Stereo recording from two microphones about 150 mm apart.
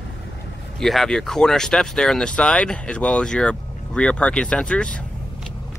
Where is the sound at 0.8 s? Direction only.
Centre (ahead or behind).